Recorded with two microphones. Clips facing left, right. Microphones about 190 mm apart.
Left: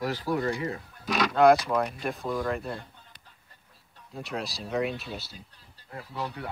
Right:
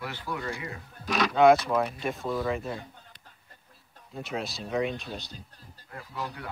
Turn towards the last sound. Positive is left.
turn(degrees=25)  # may be behind; listen again after turning